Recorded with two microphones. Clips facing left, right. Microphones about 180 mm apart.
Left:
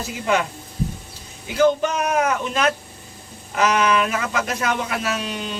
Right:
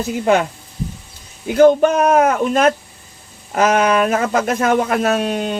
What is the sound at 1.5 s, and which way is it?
Speech, 50° right (ahead or behind).